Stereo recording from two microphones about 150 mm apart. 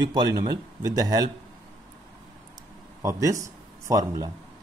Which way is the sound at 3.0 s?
20° right (ahead or behind).